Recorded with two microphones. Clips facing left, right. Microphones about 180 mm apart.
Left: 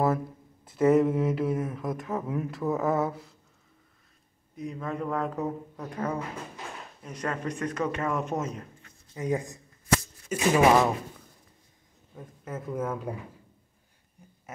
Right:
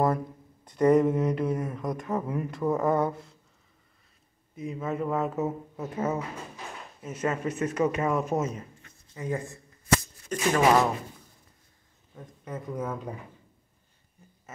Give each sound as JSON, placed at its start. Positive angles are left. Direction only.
{"t": 0.7, "sound": "speech", "side_deg": 5}
{"t": 4.6, "sound": "speech", "side_deg": -5}
{"t": 9.1, "sound": "speech", "side_deg": 15}
{"t": 12.2, "sound": "speech", "side_deg": 5}